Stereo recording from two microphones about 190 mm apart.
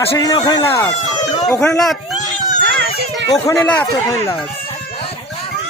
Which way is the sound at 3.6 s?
5° left (ahead or behind).